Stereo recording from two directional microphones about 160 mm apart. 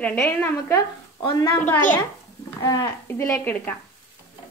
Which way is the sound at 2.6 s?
20° left (ahead or behind).